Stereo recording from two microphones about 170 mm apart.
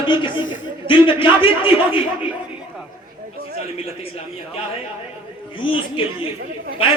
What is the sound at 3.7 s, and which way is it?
Speech, 35° left (ahead or behind).